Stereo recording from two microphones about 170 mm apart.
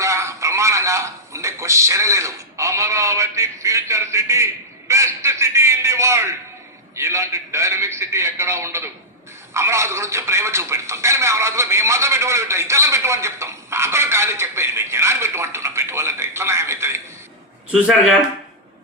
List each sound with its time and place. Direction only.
0.0 s a man's voice: 15° right (ahead or behind)
17.7 s speech: centre (ahead or behind)